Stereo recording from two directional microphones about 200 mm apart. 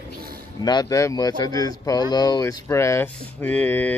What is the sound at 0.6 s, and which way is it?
Speech, 20° left (ahead or behind).